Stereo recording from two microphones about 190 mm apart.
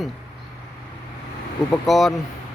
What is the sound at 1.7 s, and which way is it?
Speech, centre (ahead or behind).